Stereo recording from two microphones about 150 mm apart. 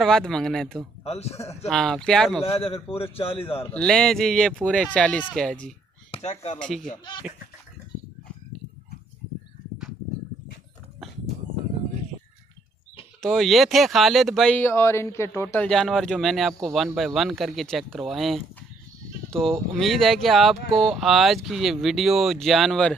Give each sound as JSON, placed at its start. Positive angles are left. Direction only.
{"t": 0.0, "sound": "speech", "side_deg": 5}
{"t": 1.0, "sound": "a man's voice", "side_deg": 45}
{"t": 1.7, "sound": "speech", "side_deg": 5}
{"t": 2.4, "sound": "a man's voice", "side_deg": 40}
{"t": 3.7, "sound": "speech", "side_deg": 5}
{"t": 6.1, "sound": "speech", "side_deg": 45}
{"t": 6.6, "sound": "speech", "side_deg": 5}
{"t": 7.3, "sound": "speech", "side_deg": -10}
{"t": 13.2, "sound": "speech", "side_deg": 0}
{"t": 15.7, "sound": "speech", "side_deg": 0}
{"t": 19.8, "sound": "speech", "side_deg": 0}